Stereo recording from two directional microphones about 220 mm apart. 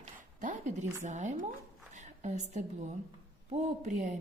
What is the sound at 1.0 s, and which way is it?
Speech, 35° right (ahead or behind).